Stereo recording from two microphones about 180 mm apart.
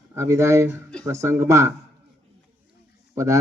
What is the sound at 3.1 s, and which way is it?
Speech, 15° right (ahead or behind).